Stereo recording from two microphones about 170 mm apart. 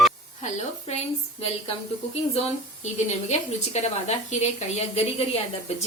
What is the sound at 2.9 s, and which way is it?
A woman's voice, 40° left (ahead or behind).